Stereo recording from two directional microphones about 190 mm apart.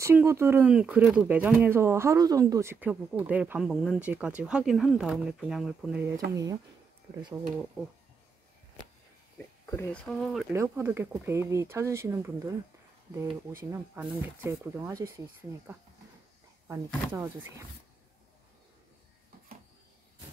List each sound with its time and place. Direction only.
0.0 s speech: 15° right (ahead or behind)
7.8 s speech: centre (ahead or behind)
10.0 s speech: centre (ahead or behind)
10.5 s speech: 15° right (ahead or behind)
14.0 s speech: 10° right (ahead or behind)
16.6 s speech: 10° right (ahead or behind)